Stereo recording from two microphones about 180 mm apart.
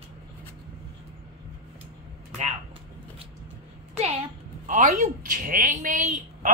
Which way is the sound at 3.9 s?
35° right (ahead or behind).